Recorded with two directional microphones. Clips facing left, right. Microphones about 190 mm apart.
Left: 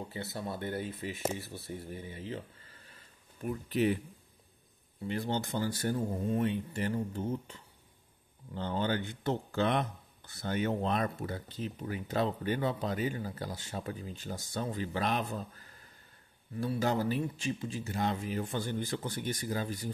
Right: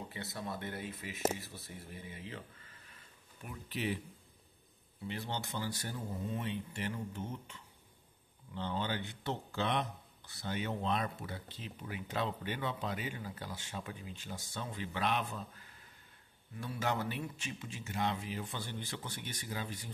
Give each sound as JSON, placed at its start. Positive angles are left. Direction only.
{"t": 0.1, "sound": "speech", "side_deg": 30}
{"t": 3.4, "sound": "speech", "side_deg": 45}
{"t": 5.0, "sound": "speech", "side_deg": 45}
{"t": 8.5, "sound": "speech", "side_deg": 45}